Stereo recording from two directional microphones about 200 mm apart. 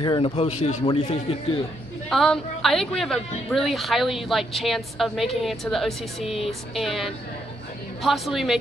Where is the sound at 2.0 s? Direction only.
Centre (ahead or behind).